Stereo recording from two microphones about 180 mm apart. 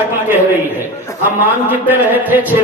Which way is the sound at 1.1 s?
15° left (ahead or behind).